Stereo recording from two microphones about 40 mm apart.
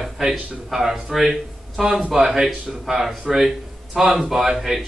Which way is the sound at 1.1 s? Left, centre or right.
Centre.